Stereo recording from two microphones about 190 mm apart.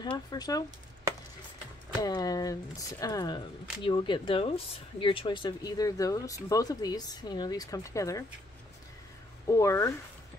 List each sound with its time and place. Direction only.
0.3 s speech: 20° left (ahead or behind)
2.0 s speech: 20° left (ahead or behind)
9.5 s speech: 15° left (ahead or behind)